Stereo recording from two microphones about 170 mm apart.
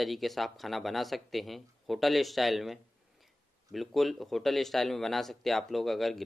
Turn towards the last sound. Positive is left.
turn(degrees=0)  # may be behind; listen again after turning